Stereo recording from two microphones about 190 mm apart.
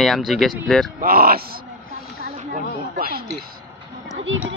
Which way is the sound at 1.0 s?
50° right (ahead or behind).